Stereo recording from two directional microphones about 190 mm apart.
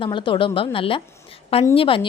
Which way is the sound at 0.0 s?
25° left (ahead or behind).